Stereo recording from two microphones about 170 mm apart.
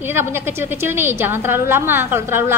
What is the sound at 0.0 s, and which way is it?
A woman's voice, 15° right (ahead or behind).